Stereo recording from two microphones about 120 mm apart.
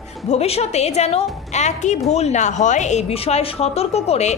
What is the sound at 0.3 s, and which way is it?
A woman's voice, 60° left (ahead or behind).